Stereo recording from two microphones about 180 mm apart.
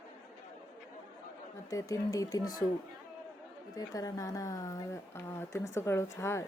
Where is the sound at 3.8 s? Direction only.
20° left (ahead or behind).